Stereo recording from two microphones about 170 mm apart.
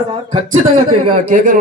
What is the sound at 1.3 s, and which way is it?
Speech, 55° right (ahead or behind).